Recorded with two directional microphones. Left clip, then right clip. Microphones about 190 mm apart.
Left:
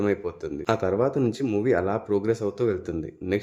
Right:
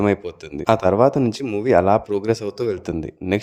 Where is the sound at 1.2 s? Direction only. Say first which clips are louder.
Right 3 dB; 25° right (ahead or behind).